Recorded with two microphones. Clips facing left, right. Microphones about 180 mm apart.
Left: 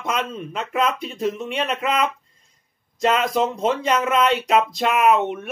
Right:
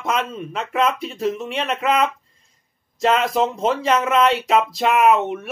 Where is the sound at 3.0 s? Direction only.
Centre (ahead or behind).